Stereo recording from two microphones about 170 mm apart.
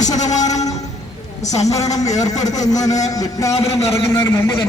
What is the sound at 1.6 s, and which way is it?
A man's voice, 20° left (ahead or behind).